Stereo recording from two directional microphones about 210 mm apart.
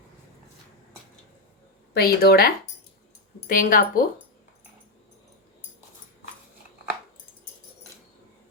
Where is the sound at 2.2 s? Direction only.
45° left (ahead or behind).